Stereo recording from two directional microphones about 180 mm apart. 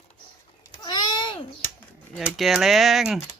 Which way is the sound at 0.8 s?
25° left (ahead or behind).